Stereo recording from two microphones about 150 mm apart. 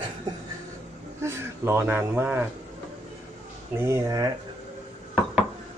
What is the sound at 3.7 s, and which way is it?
Speech, 15° right (ahead or behind).